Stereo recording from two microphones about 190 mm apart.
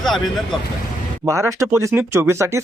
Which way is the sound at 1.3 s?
15° right (ahead or behind).